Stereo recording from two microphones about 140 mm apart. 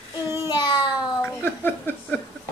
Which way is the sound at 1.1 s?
15° left (ahead or behind).